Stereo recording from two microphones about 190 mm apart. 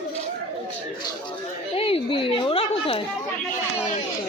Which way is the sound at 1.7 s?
30° left (ahead or behind).